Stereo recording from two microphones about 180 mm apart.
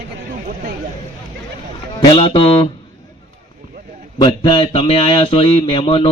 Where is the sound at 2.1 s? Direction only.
30° left (ahead or behind).